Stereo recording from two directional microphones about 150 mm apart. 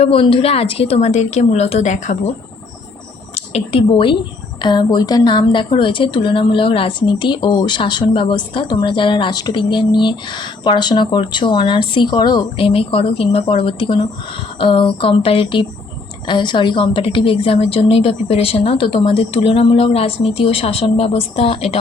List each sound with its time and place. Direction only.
0.0 s a woman's voice: 35° left (ahead or behind); by 2.3 s 50° left (ahead or behind)
3.3 s a woman's voice: 40° left (ahead or behind)